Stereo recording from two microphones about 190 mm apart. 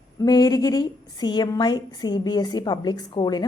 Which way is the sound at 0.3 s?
20° left (ahead or behind).